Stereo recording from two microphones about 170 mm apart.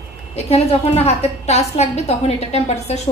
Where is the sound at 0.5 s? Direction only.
35° left (ahead or behind).